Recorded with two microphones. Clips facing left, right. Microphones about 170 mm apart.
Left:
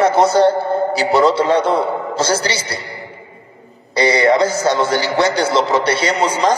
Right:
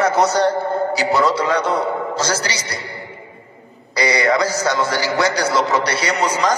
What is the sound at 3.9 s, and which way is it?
A man's voice, 30° left (ahead or behind).